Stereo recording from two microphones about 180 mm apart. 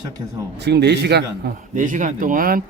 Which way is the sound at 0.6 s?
65° right (ahead or behind).